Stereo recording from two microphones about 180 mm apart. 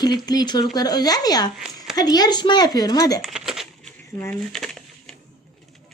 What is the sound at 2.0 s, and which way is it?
Speech, 20° left (ahead or behind).